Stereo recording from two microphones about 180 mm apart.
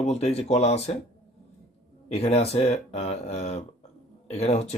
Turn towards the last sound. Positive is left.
turn(degrees=35)  # may be behind; listen again after turning